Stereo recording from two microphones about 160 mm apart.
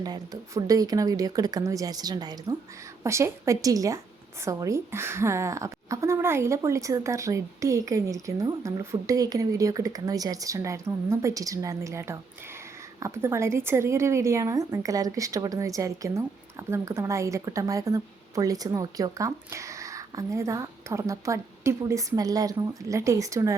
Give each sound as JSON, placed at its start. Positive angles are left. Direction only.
{"t": 0.0, "sound": "a woman's voice", "side_deg": -25}